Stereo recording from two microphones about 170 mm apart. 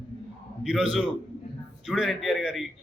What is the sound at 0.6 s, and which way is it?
A man's voice, centre (ahead or behind).